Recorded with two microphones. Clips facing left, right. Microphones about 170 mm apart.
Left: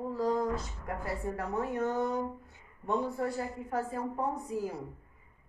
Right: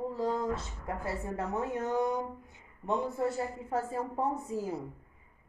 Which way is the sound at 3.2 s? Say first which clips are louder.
Right 2 dB; 25° right (ahead or behind).